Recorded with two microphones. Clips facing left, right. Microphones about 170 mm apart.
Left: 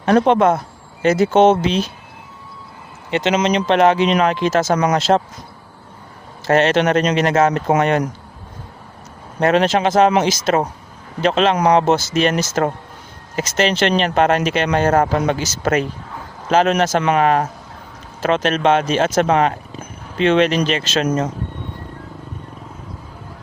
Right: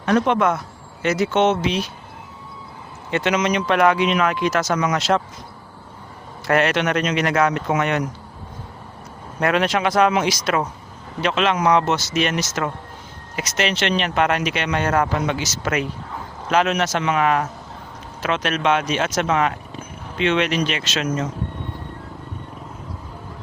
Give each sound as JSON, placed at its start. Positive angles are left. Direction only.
{"t": 0.3, "sound": "speech", "side_deg": 30}
{"t": 3.1, "sound": "speech", "side_deg": 25}
{"t": 4.6, "sound": "speech", "side_deg": 40}
{"t": 6.5, "sound": "speech", "side_deg": 30}
{"t": 9.4, "sound": "speech", "side_deg": 30}